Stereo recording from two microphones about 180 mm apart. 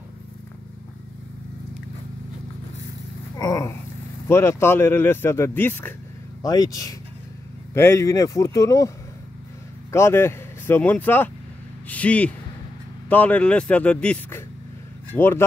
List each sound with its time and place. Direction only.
3.3 s a man's voice: 20° left (ahead or behind)